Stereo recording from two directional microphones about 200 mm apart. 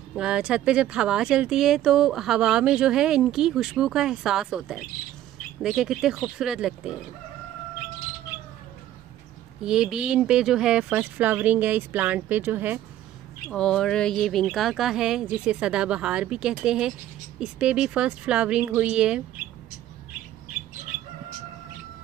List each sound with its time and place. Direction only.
0.1 s speech: 5° right (ahead or behind)
9.6 s speech: 5° right (ahead or behind)
13.5 s speech: 5° left (ahead or behind)